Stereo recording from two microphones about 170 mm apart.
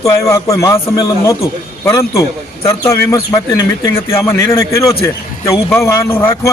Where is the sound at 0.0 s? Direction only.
20° left (ahead or behind).